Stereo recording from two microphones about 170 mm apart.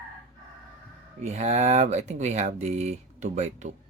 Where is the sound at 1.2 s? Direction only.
40° right (ahead or behind).